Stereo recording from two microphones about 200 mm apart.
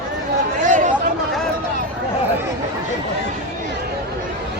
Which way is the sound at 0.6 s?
40° right (ahead or behind).